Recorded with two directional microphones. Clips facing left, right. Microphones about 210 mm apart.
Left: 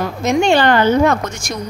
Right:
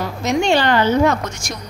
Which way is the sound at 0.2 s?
50° left (ahead or behind).